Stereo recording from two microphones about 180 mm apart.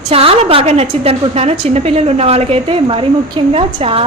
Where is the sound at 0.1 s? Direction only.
35° right (ahead or behind).